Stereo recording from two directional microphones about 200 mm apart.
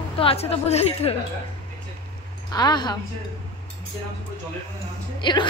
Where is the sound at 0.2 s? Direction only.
30° left (ahead or behind).